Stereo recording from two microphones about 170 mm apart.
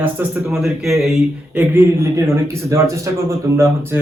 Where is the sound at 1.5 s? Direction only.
10° right (ahead or behind).